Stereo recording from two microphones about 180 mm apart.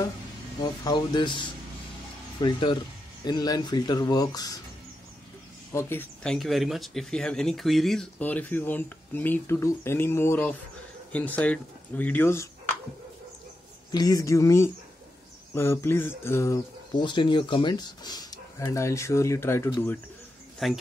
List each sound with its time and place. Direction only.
0.8 s speech: 25° left (ahead or behind)
5.7 s speech: 15° left (ahead or behind)
13.9 s speech: 20° left (ahead or behind)
20.5 s speech: centre (ahead or behind)